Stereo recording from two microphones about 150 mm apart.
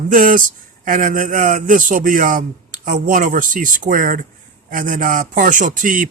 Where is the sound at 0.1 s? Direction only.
65° right (ahead or behind).